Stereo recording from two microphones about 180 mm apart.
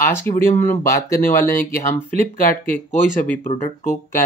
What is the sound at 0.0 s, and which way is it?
Speech, 15° left (ahead or behind).